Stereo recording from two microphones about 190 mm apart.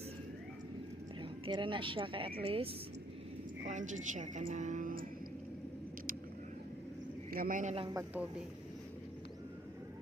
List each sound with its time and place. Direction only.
1.2 s speech: 25° right (ahead or behind)
3.7 s a woman's voice: 40° right (ahead or behind)
7.3 s a man's voice: 50° right (ahead or behind)